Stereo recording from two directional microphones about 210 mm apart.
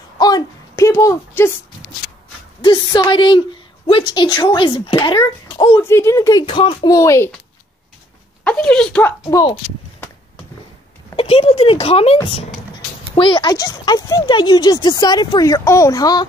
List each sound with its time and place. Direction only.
0.2 s a sound: 15° left (ahead or behind)
2.6 s a woman's voice: 20° left (ahead or behind)
5.8 s speech: 10° left (ahead or behind)
8.5 s speech: 5° left (ahead or behind)
11.1 s a woman's voice: 25° left (ahead or behind)